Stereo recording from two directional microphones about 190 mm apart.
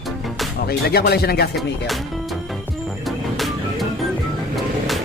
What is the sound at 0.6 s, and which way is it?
Speech, 55° left (ahead or behind).